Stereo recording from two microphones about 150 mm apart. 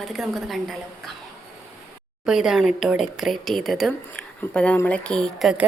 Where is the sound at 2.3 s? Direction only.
5° right (ahead or behind).